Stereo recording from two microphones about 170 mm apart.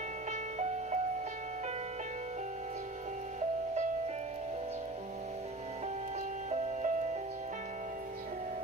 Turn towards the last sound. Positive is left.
turn(degrees=-45)  # may be behind; listen again after turning